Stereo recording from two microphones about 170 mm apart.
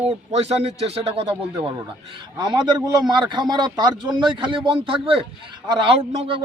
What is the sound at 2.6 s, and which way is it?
A man's voice, 25° right (ahead or behind).